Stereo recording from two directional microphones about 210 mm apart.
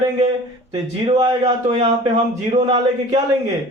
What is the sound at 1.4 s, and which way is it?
Speech, 30° right (ahead or behind).